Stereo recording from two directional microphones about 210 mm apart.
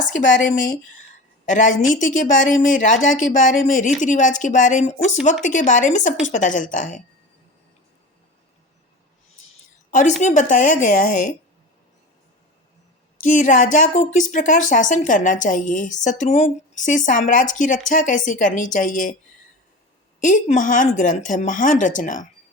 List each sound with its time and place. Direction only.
1.5 s speech: 35° left (ahead or behind)
9.9 s speech: 35° left (ahead or behind)
13.1 s speech: 35° left (ahead or behind)
20.2 s speech: 35° left (ahead or behind)